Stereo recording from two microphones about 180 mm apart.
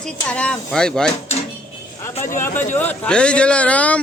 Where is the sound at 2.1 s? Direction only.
45° left (ahead or behind).